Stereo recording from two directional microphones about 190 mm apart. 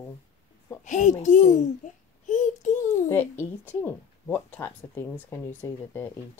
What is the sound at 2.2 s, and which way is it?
Child singing, 40° left (ahead or behind).